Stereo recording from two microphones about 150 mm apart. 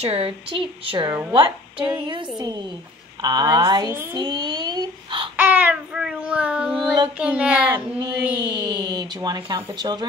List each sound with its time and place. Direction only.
0.0 s a child's voice: 40° right (ahead or behind)
5.4 s speech: 10° right (ahead or behind)
8.0 s speech: 30° right (ahead or behind)